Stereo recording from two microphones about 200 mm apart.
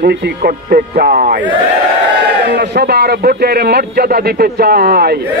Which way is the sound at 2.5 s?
55° right (ahead or behind).